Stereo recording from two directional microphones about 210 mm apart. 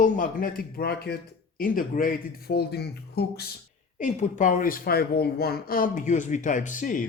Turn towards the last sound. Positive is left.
turn(degrees=40)  # may be behind; listen again after turning